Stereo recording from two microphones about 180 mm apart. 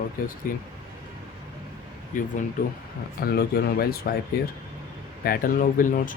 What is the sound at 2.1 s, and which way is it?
Speech, 50° left (ahead or behind).